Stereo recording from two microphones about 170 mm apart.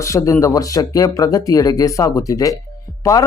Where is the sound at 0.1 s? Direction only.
20° left (ahead or behind).